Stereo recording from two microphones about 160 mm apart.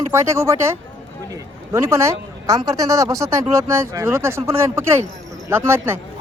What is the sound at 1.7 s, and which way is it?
A man's voice, 20° right (ahead or behind).